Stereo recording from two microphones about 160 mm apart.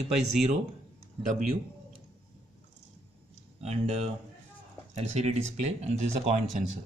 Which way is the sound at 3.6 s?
40° right (ahead or behind).